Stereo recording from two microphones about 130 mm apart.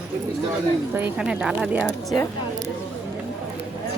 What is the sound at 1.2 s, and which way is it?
Speech, 5° right (ahead or behind).